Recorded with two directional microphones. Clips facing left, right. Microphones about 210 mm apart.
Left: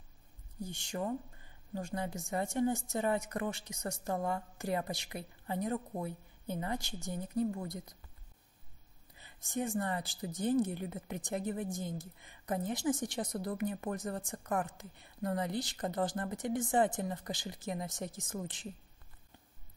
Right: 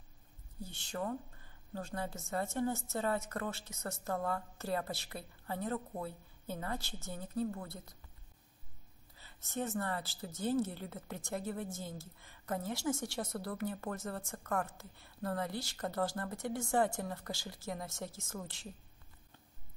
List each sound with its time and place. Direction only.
0.6 s speech: 15° left (ahead or behind)
9.2 s speech: 15° left (ahead or behind)